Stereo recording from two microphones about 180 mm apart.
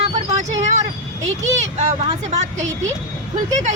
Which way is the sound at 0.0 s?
35° right (ahead or behind).